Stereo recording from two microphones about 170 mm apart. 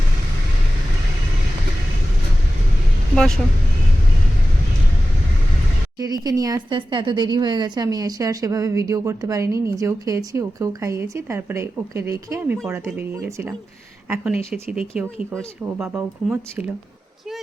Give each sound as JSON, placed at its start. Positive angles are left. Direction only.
{"t": 3.2, "sound": "speech", "side_deg": 0}
{"t": 6.0, "sound": "speech", "side_deg": -20}
{"t": 14.5, "sound": "speech", "side_deg": -5}